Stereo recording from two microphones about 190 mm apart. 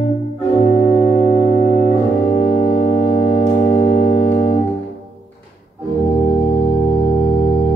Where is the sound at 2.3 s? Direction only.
40° left (ahead or behind).